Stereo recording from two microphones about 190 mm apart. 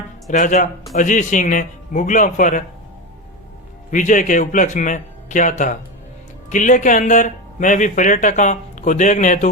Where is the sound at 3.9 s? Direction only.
40° left (ahead or behind).